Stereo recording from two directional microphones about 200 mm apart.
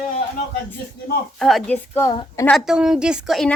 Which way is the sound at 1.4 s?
Centre (ahead or behind).